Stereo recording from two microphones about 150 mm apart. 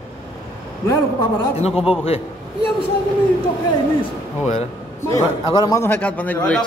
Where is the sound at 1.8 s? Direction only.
40° left (ahead or behind).